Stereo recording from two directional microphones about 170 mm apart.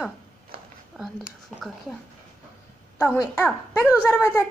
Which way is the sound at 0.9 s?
Centre (ahead or behind).